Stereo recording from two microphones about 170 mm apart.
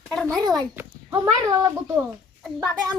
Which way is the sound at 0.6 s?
20° right (ahead or behind).